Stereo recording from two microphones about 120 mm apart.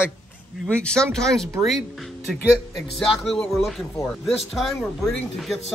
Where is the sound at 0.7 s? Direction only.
10° left (ahead or behind).